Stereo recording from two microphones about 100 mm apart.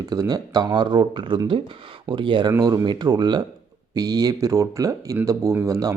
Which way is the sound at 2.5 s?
35° right (ahead or behind).